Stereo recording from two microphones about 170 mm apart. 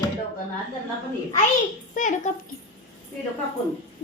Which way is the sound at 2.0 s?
45° left (ahead or behind).